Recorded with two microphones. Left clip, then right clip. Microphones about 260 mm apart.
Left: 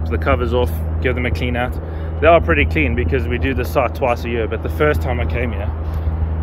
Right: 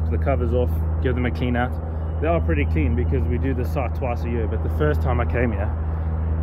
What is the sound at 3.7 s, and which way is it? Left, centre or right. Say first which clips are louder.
Speech: left 13 dB; centre.